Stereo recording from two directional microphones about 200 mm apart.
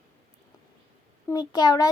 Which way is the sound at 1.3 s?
20° left (ahead or behind).